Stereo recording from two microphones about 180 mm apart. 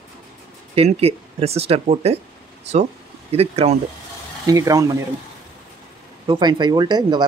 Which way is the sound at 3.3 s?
35° right (ahead or behind).